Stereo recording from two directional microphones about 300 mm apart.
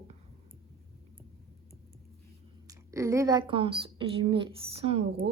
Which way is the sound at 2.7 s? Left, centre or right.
Centre.